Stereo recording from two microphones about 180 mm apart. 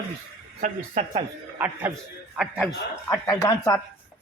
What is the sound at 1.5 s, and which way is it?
Speech, 10° right (ahead or behind).